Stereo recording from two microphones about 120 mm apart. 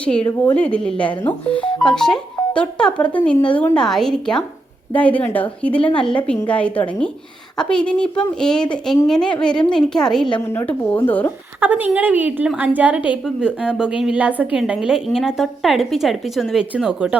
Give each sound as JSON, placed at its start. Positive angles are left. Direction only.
{"t": 0.0, "sound": "speech", "side_deg": 10}
{"t": 10.4, "sound": "speech", "side_deg": 20}
{"t": 11.6, "sound": "a woman's voice", "side_deg": -15}